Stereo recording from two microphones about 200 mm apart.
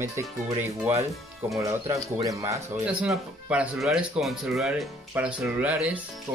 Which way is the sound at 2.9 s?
5° right (ahead or behind).